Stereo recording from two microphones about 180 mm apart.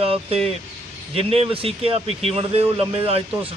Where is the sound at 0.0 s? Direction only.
35° right (ahead or behind).